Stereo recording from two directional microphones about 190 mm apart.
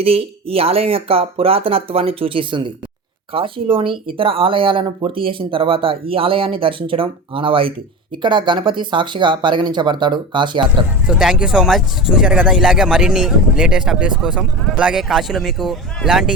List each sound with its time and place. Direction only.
0.0 s speech: 30° right (ahead or behind)
11.0 s speech: 5° right (ahead or behind)